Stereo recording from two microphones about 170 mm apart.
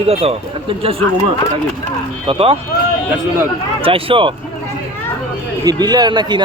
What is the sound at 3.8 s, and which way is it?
Speech, 30° right (ahead or behind).